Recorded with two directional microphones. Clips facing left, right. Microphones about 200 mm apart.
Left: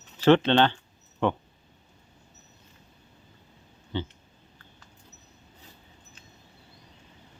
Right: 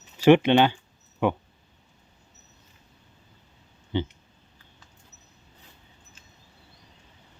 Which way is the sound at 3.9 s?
15° right (ahead or behind).